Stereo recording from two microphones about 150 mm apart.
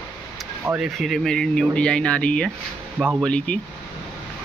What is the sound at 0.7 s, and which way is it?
Speech, centre (ahead or behind).